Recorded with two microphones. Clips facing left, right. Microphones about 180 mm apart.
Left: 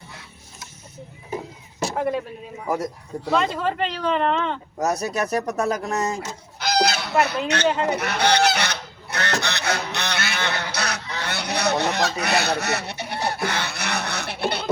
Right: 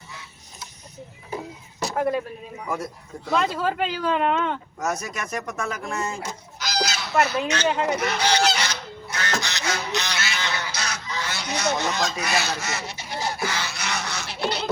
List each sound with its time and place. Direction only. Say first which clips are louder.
2.0 s speech: right 1 dB; centre (ahead or behind)
2.6 s speech: left 5 dB; 40° left (ahead or behind)
3.3 s speech: left 1 dB; centre (ahead or behind)
4.8 s speech: left 8 dB; 35° left (ahead or behind)
6.6 s chicken: left 6 dB; 55° left (ahead or behind)
7.4 s speech: left 2 dB; 60° left (ahead or behind)
7.9 s goose: left 2 dB; 60° left (ahead or behind)